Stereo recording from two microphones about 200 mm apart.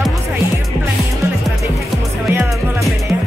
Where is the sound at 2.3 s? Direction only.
10° right (ahead or behind).